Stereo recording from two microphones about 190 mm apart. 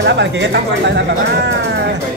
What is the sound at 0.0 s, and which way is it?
Speech, 65° right (ahead or behind).